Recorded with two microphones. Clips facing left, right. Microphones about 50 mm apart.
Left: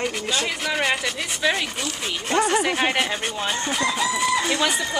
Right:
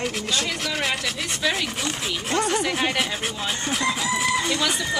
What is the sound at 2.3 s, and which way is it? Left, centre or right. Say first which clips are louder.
Speech: left 3 dB; centre.